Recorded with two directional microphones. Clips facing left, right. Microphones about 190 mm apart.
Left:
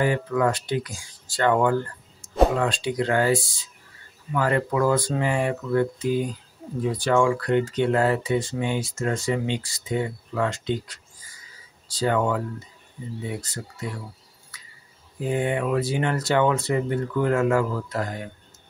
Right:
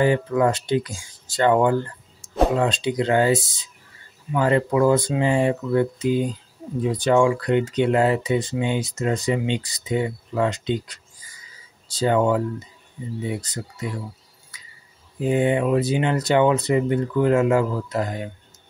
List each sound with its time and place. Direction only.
0.0 s speech: 25° right (ahead or behind)
15.1 s speech: 20° right (ahead or behind)